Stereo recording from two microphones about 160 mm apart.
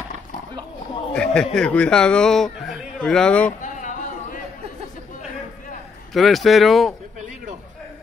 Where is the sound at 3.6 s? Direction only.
50° left (ahead or behind).